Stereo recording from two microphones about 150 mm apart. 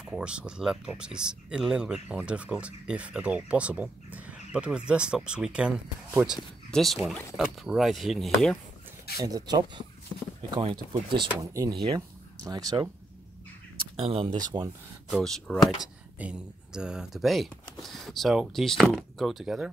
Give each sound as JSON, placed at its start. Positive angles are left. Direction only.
{"t": 0.0, "sound": "speech", "side_deg": -5}
{"t": 9.2, "sound": "speech", "side_deg": -25}
{"t": 13.9, "sound": "speech", "side_deg": -40}
{"t": 14.5, "sound": "speech", "side_deg": -25}
{"t": 15.0, "sound": "speech", "side_deg": 0}